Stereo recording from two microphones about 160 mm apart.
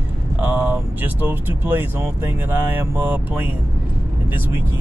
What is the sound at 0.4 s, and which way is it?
Speech, 10° right (ahead or behind).